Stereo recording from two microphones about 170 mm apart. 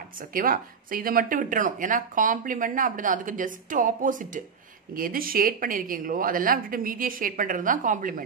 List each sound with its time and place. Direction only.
0.3 s a woman's voice: 55° right (ahead or behind)